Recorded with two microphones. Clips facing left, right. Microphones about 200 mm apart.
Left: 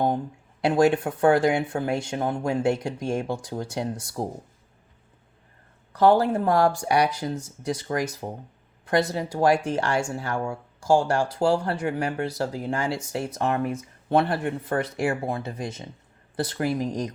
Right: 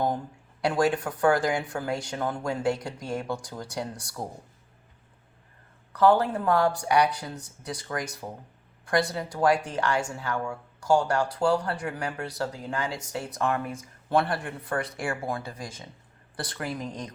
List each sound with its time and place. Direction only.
0.6 s speech: 25° left (ahead or behind)
5.9 s speech: 30° left (ahead or behind)
9.1 s speech: 30° left (ahead or behind)